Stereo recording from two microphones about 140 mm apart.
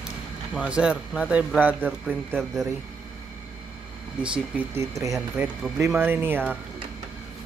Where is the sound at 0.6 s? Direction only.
5° right (ahead or behind).